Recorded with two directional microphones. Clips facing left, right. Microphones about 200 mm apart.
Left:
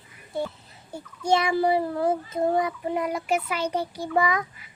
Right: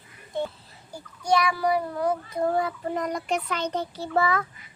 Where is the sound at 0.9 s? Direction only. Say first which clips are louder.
Left 1 dB; 25° left (ahead or behind).